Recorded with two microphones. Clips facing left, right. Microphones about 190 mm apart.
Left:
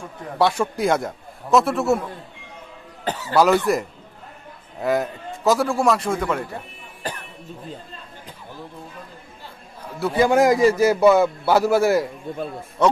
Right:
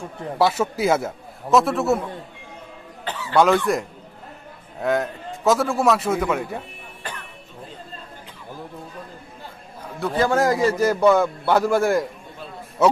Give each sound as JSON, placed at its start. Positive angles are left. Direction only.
{"t": 0.4, "sound": "a man's voice", "side_deg": -5}
{"t": 3.1, "sound": "speech", "side_deg": 40}
{"t": 3.3, "sound": "a man's voice", "side_deg": 5}
{"t": 9.9, "sound": "a man's voice", "side_deg": 10}